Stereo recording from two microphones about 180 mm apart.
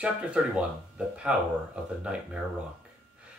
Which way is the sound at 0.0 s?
5° right (ahead or behind).